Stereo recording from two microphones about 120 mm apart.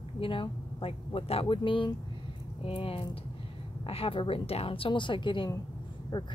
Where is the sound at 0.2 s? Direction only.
45° left (ahead or behind).